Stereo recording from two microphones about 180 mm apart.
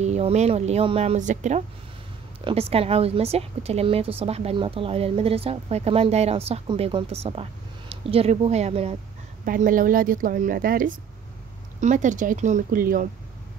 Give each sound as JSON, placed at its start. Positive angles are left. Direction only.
{"t": 0.0, "sound": "a woman's voice", "side_deg": -40}
{"t": 9.4, "sound": "speech", "side_deg": -50}